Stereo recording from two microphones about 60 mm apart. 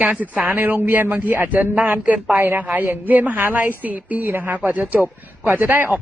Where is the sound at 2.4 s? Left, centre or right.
Right.